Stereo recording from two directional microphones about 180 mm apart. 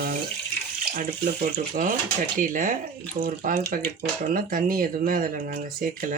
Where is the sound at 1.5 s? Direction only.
45° right (ahead or behind).